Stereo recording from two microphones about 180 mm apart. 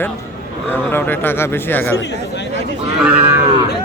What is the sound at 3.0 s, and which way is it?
Cattle, 5° right (ahead or behind).